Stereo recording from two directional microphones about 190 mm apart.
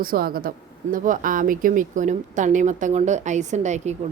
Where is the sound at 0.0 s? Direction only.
50° right (ahead or behind).